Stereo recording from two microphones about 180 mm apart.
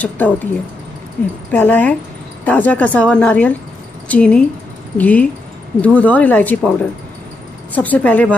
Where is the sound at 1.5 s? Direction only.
10° left (ahead or behind).